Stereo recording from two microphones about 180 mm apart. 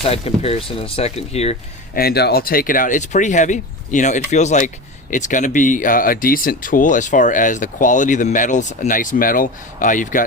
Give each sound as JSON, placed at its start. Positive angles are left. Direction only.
{"t": 0.0, "sound": "speech", "side_deg": 35}
{"t": 2.0, "sound": "speech", "side_deg": 60}